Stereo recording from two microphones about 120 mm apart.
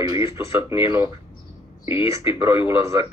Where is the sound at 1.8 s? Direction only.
45° left (ahead or behind).